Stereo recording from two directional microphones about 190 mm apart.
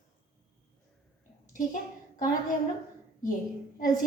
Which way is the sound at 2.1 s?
45° left (ahead or behind).